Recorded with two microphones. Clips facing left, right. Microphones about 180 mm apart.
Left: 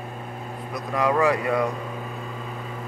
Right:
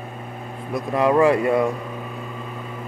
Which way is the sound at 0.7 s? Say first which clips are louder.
Right 5 dB; 25° right (ahead or behind).